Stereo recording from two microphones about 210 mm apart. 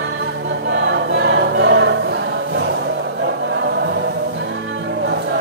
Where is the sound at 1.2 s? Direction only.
60° right (ahead or behind).